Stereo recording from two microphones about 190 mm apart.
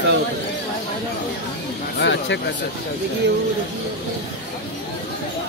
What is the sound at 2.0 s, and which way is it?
Speech, 65° left (ahead or behind).